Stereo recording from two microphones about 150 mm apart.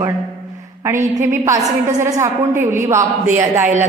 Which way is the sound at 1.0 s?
20° right (ahead or behind).